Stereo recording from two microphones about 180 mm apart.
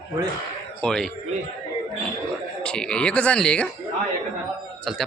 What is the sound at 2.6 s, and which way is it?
A man's voice, 5° left (ahead or behind).